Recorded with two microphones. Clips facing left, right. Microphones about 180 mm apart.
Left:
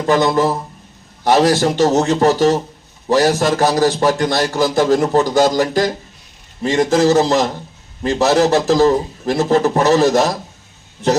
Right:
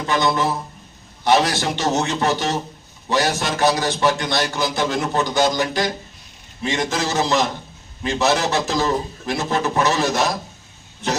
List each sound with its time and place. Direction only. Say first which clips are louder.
0.1 s a man's voice: left 6 dB; 40° left (ahead or behind)